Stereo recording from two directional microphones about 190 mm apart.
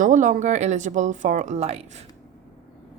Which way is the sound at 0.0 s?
40° right (ahead or behind).